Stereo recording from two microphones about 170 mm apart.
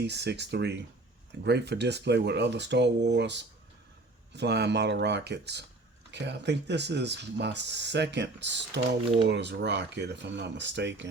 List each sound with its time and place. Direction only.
0.0 s speech: 80° right
4.4 s speech: 80° right
6.1 s speech: 90° right